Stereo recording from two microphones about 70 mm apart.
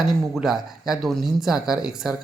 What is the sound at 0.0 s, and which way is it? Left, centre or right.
Speech, centre.